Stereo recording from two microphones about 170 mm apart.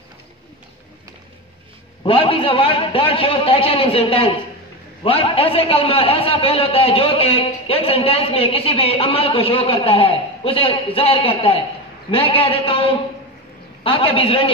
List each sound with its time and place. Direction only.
2.0 s a man's voice: 30° left (ahead or behind)